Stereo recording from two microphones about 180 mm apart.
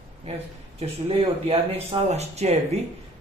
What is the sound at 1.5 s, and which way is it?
Speech, 35° right (ahead or behind).